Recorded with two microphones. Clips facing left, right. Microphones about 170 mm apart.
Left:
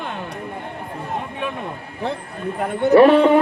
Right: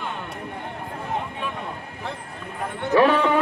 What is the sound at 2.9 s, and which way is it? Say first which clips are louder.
Speech: left 7 dB; 35° left (ahead or behind).